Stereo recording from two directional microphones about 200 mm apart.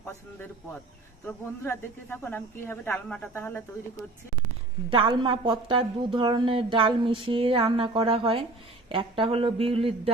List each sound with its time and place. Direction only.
1.6 s speech: 10° left (ahead or behind)
4.9 s a woman's voice: 25° right (ahead or behind)